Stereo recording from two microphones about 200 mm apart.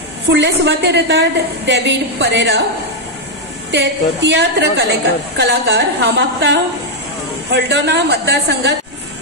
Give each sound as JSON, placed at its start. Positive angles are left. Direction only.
{"t": 0.3, "sound": "a woman's voice", "side_deg": -60}
{"t": 3.7, "sound": "a woman's voice", "side_deg": -60}